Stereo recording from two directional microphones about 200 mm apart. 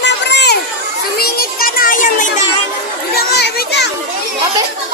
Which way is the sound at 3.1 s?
55° left (ahead or behind).